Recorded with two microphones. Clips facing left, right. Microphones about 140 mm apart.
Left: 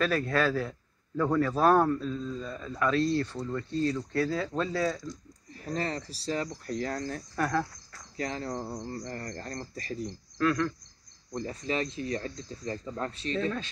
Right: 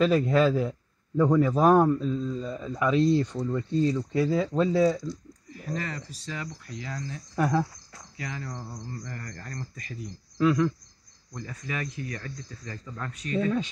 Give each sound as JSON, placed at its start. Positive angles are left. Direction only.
{"t": 0.0, "sound": "a man's voice", "side_deg": -20}
{"t": 5.0, "sound": "speech", "side_deg": 40}
{"t": 7.3, "sound": "a man's voice", "side_deg": -15}
{"t": 8.2, "sound": "speech", "side_deg": 35}
{"t": 10.3, "sound": "speech", "side_deg": -15}
{"t": 11.3, "sound": "speech", "side_deg": 30}